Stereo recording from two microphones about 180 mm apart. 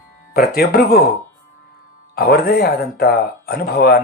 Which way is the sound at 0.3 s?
60° left (ahead or behind).